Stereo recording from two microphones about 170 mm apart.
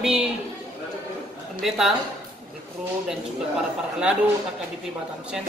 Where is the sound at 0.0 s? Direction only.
5° right (ahead or behind).